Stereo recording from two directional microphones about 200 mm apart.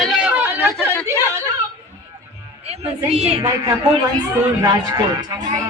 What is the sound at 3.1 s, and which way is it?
Speech, 30° right (ahead or behind).